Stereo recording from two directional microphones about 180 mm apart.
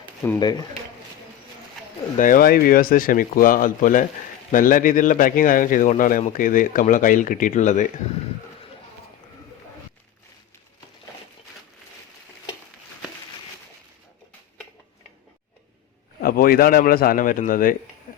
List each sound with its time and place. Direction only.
0.2 s speech: 10° left (ahead or behind)
2.1 s speech: 50° left (ahead or behind)
16.2 s speech: 55° left (ahead or behind)